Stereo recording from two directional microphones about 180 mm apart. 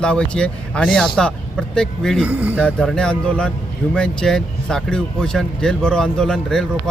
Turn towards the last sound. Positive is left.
turn(degrees=5)  # may be behind; listen again after turning